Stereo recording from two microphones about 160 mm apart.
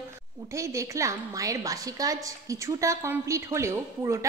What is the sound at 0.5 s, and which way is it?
A woman's voice, 20° right (ahead or behind).